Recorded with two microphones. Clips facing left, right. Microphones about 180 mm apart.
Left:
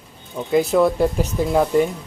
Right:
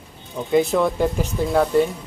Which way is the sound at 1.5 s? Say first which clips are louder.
Even; 10° left (ahead or behind).